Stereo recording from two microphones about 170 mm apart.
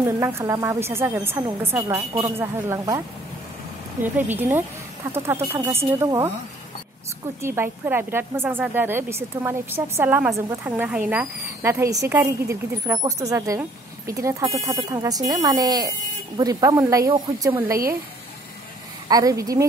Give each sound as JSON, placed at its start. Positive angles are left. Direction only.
{"t": 0.0, "sound": "a woman's voice", "side_deg": -15}
{"t": 4.0, "sound": "a woman's voice", "side_deg": -10}
{"t": 7.4, "sound": "a woman's voice", "side_deg": -15}
{"t": 19.0, "sound": "speech", "side_deg": -20}